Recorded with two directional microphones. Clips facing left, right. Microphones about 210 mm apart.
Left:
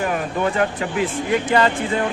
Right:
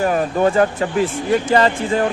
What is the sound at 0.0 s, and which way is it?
Speech, 40° right (ahead or behind).